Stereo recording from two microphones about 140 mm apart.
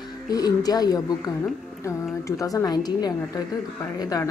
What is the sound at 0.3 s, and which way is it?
Speech, 25° left (ahead or behind).